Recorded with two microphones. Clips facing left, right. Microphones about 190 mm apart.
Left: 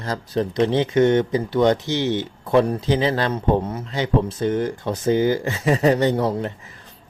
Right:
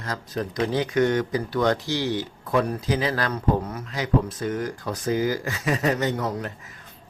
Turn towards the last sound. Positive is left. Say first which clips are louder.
# left 6 dB
turn(degrees=30)  # may be behind; listen again after turning